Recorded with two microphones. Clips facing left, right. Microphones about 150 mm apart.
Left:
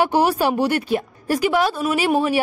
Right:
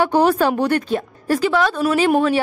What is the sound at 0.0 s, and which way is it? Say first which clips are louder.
A woman's voice: right 2 dB; 10° left (ahead or behind).